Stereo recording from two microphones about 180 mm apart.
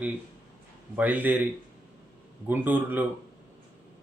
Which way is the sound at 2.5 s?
10° right (ahead or behind).